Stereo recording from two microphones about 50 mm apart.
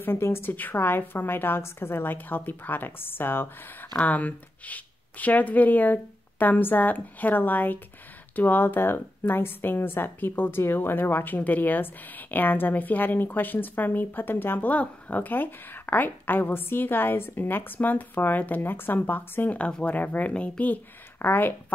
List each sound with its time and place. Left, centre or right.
0.0 s a woman's voice: left
0.5 s a woman's voice: left
4.0 s a woman's voice: left